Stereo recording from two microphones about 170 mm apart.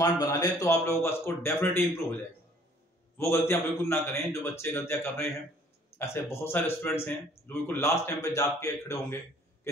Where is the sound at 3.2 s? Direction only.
15° left (ahead or behind).